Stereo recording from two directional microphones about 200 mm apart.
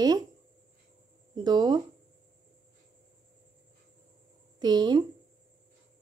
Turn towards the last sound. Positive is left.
turn(degrees=-20)  # may be behind; listen again after turning